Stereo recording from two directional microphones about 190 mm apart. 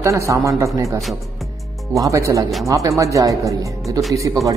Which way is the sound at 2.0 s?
15° right (ahead or behind).